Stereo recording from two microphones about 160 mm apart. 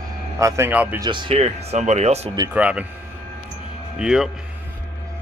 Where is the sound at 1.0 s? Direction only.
30° right (ahead or behind).